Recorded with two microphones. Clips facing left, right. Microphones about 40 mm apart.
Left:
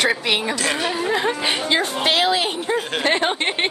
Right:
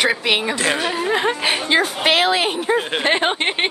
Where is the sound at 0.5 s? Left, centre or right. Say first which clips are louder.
Right 2 dB; right.